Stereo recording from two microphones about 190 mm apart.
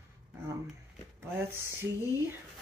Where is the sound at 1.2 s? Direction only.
10° right (ahead or behind).